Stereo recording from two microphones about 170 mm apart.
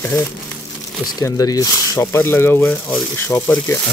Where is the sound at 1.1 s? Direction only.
20° left (ahead or behind).